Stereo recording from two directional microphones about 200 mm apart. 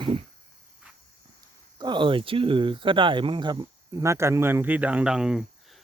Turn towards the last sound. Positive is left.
turn(degrees=-5)  # may be behind; listen again after turning